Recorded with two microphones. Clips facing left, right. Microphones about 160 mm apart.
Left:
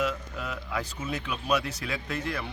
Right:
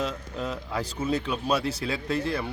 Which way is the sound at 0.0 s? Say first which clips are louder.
Even; 30° right (ahead or behind).